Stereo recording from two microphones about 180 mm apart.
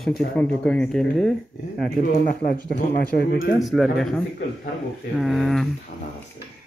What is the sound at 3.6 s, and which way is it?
Speech, centre (ahead or behind).